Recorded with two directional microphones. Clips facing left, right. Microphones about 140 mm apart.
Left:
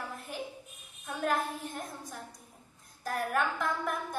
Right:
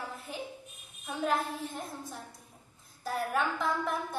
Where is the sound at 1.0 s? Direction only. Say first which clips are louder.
Even; centre (ahead or behind).